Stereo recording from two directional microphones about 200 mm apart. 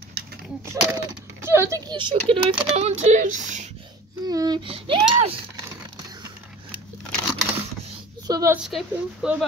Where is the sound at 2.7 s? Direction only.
35° right (ahead or behind).